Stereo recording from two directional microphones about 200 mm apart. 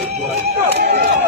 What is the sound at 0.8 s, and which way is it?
Speech, 50° right (ahead or behind).